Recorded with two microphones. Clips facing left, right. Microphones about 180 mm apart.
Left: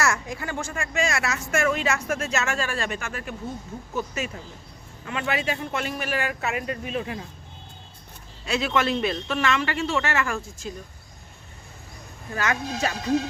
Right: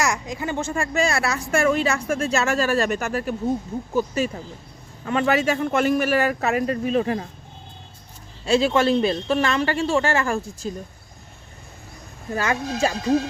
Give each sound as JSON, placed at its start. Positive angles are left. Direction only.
{"t": 0.0, "sound": "a woman's voice", "side_deg": -20}
{"t": 8.4, "sound": "a woman's voice", "side_deg": -30}
{"t": 12.3, "sound": "speech", "side_deg": -30}